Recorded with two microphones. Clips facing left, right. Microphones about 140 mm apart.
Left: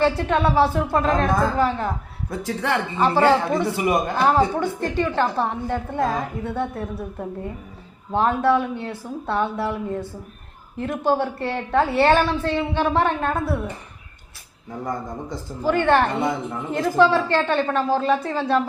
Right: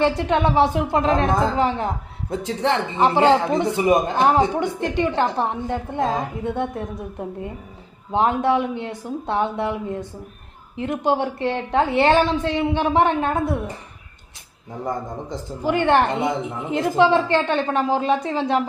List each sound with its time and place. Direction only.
0.0 s speech: 20° right (ahead or behind)
8.1 s speech: 20° right (ahead or behind)
10.8 s a woman's voice: 15° right (ahead or behind)
14.8 s a woman's voice: 20° right (ahead or behind)